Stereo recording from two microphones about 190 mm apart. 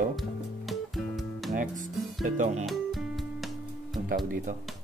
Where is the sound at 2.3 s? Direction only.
40° right (ahead or behind).